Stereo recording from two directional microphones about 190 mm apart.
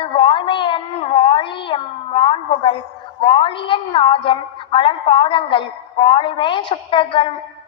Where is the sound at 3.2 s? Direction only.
25° left (ahead or behind).